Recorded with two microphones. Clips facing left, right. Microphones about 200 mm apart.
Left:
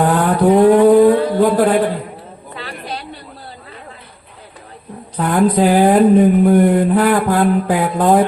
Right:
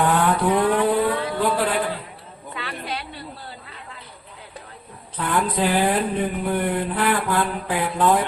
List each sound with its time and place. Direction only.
0.0 s vehicle: 40° left (ahead or behind)
2.6 s chatter: 40° left (ahead or behind)
5.1 s speech: 40° left (ahead or behind)